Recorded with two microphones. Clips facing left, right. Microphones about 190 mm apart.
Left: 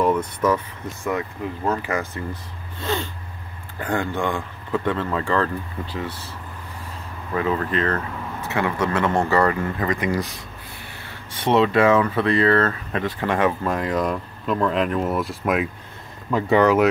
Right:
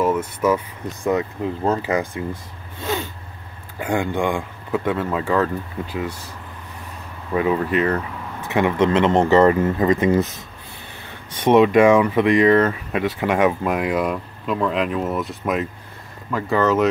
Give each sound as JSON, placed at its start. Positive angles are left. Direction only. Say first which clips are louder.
{"t": 0.0, "sound": "speech", "louder": "right 1 dB", "side_deg": -5}
{"t": 0.8, "sound": "speech", "louder": "right 6 dB", "side_deg": -20}
{"t": 2.2, "sound": "speech", "louder": "right 3 dB", "side_deg": -10}
{"t": 2.8, "sound": "a sound", "louder": "right 1 dB", "side_deg": -5}
{"t": 3.8, "sound": "speech", "louder": "right 3 dB", "side_deg": -15}
{"t": 7.3, "sound": "speech", "louder": "right 3 dB", "side_deg": -15}
{"t": 11.3, "sound": "speech", "louder": "right 4 dB", "side_deg": -15}
{"t": 16.3, "sound": "speech", "louder": "left 2 dB", "side_deg": 20}